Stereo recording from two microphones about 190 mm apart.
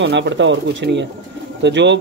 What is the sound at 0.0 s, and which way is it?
Speech, 70° right (ahead or behind).